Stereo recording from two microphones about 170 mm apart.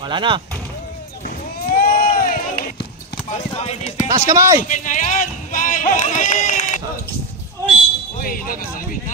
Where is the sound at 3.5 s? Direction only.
35° left (ahead or behind).